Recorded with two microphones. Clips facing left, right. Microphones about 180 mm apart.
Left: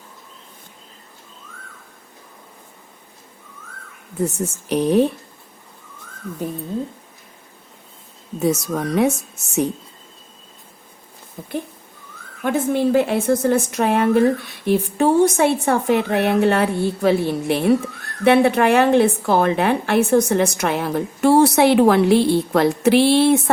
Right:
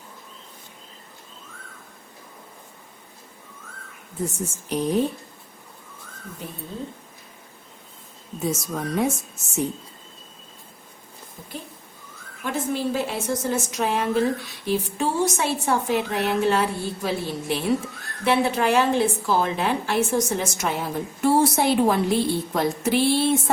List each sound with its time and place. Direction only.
4.2 s a woman's voice: 70° left (ahead or behind)
8.4 s a woman's voice: 70° left (ahead or behind)
11.4 s a woman's voice: 55° left (ahead or behind); by 23.4 s 70° left (ahead or behind)